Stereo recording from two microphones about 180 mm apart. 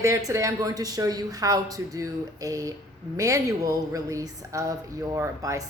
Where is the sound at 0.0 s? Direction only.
20° right (ahead or behind).